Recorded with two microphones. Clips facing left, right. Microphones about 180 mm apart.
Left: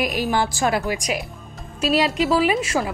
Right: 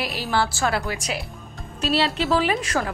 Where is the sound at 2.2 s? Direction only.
5° left (ahead or behind).